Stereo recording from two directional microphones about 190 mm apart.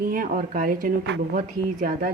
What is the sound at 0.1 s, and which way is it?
A woman's voice, 45° right (ahead or behind).